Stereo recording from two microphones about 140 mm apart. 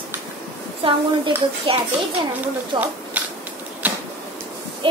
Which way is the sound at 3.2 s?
10° right (ahead or behind).